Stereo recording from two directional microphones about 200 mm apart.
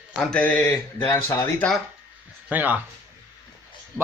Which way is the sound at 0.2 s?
5° left (ahead or behind).